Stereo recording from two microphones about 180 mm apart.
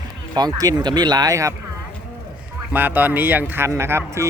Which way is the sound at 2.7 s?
10° right (ahead or behind).